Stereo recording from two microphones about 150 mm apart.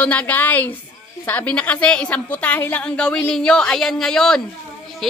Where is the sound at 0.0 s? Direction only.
10° left (ahead or behind).